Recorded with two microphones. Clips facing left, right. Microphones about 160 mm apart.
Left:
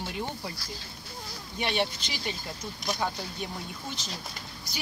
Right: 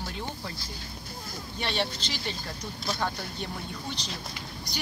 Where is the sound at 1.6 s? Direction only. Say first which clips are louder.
Left 2 dB; 10° left (ahead or behind).